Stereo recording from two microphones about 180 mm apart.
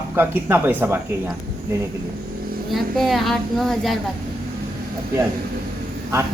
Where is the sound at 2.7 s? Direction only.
Centre (ahead or behind).